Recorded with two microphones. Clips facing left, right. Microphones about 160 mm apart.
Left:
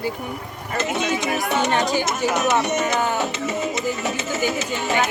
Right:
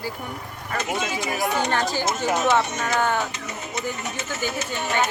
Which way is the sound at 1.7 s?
15° left (ahead or behind).